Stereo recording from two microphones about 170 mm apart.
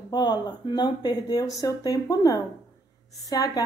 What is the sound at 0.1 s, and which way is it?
A woman's voice, 25° left (ahead or behind).